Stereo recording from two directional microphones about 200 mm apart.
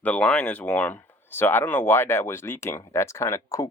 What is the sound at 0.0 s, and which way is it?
Speech, 5° left (ahead or behind).